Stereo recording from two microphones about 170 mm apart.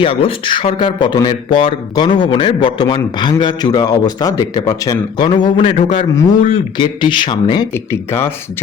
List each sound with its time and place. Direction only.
0.0 s a man's voice: 30° left (ahead or behind)
7.7 s speech: 15° left (ahead or behind)